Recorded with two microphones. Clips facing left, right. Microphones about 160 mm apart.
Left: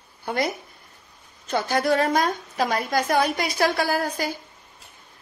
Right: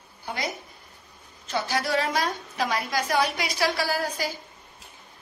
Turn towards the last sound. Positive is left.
turn(degrees=55)  # may be behind; listen again after turning